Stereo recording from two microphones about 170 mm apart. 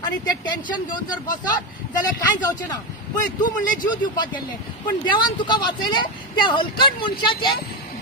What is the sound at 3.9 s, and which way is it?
Speech, 25° left (ahead or behind).